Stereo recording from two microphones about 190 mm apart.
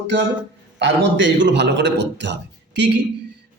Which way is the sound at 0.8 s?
70° right (ahead or behind).